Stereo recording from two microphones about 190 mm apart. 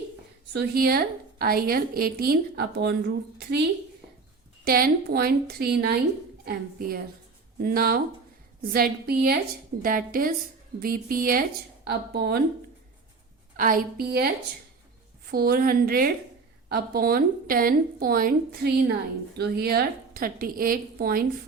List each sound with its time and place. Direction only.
0.5 s a woman's voice: 55° right (ahead or behind)
4.6 s a woman's voice: 50° right (ahead or behind)
13.6 s a woman's voice: 45° right (ahead or behind)
15.3 s a woman's voice: 50° right (ahead or behind)